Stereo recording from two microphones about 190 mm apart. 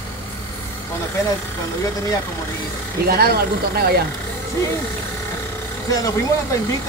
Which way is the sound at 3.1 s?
55° right (ahead or behind).